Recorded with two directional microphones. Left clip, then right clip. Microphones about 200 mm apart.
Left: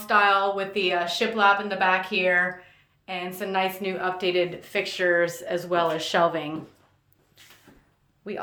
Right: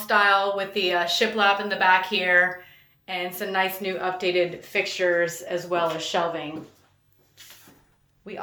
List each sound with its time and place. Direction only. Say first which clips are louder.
0.1 s a woman's voice: even; 10° left (ahead or behind); by 6.5 s 25° left (ahead or behind)
8.2 s speech: left 3 dB; 25° left (ahead or behind)